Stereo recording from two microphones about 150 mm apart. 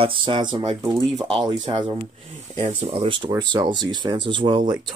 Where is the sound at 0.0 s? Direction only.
35° right (ahead or behind).